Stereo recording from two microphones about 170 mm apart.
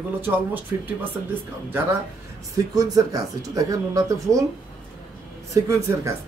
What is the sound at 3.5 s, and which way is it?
Speech, 20° right (ahead or behind).